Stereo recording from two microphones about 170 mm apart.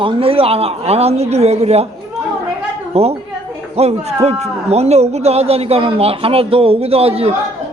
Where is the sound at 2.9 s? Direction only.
35° right (ahead or behind).